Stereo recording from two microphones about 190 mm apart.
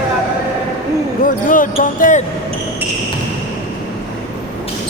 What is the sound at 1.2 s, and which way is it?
Speech, 45° left (ahead or behind).